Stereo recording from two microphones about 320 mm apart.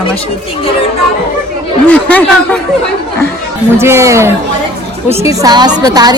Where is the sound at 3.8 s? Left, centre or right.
Centre.